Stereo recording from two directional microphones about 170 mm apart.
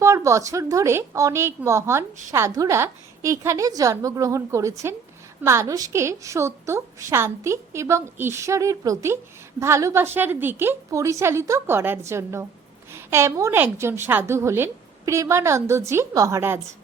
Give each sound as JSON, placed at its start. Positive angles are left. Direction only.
{"t": 0.0, "sound": "a woman's voice", "side_deg": -15}